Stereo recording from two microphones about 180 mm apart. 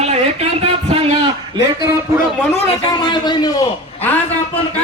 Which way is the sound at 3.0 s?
25° left (ahead or behind).